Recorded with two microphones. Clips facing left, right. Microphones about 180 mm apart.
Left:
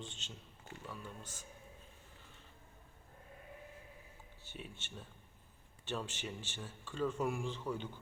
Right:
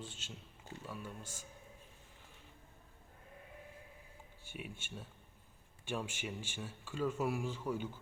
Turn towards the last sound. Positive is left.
turn(degrees=-10)  # may be behind; listen again after turning